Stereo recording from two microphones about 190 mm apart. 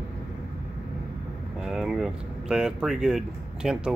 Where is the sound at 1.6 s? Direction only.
Centre (ahead or behind).